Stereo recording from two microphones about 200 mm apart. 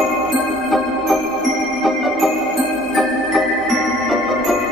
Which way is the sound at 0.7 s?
Centre (ahead or behind).